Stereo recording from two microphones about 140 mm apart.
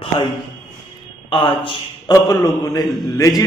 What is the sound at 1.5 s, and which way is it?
Speech, 40° left (ahead or behind).